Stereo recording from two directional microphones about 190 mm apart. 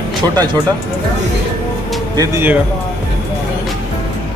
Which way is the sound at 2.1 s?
20° right (ahead or behind).